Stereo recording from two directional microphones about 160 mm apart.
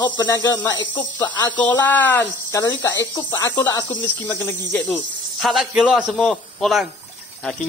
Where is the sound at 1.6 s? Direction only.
10° left (ahead or behind).